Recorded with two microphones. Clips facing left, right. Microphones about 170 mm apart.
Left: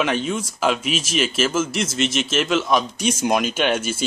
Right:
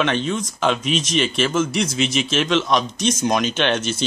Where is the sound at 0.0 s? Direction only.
5° left (ahead or behind).